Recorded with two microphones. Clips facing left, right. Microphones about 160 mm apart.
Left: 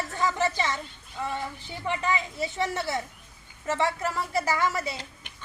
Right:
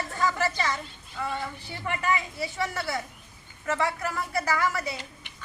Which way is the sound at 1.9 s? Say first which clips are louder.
Even; 20° left (ahead or behind).